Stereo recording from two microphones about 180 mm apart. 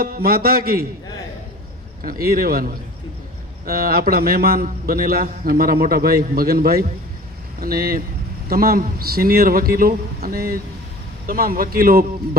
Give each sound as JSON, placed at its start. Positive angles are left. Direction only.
{"t": 0.0, "sound": "a man's voice", "side_deg": -55}
{"t": 2.2, "sound": "a man's voice", "side_deg": -55}